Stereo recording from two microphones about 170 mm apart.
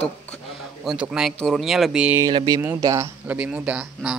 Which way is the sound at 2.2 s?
20° right (ahead or behind).